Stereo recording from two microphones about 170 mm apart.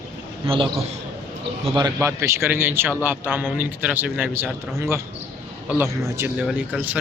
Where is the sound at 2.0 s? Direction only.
15° right (ahead or behind).